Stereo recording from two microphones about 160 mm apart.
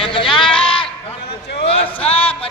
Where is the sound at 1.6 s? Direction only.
40° left (ahead or behind).